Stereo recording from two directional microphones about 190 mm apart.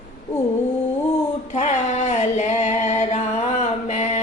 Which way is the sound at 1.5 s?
35° left (ahead or behind).